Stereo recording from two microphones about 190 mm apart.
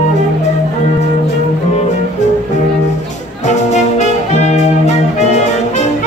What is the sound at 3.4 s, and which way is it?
Music, 40° left (ahead or behind).